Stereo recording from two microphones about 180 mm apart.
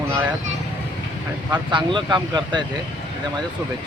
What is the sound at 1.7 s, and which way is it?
Speech, 25° right (ahead or behind).